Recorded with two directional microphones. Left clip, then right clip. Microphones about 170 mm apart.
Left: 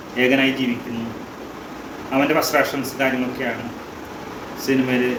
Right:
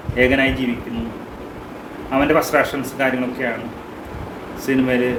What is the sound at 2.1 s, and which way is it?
Speech, 15° right (ahead or behind).